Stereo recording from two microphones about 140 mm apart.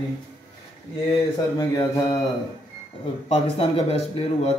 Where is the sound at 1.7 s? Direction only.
25° left (ahead or behind).